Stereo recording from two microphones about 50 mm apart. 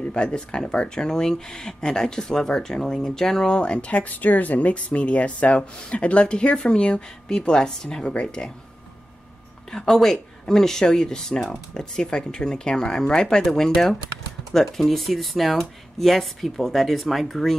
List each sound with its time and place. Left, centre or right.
0.1 s speech: centre
9.7 s speech: centre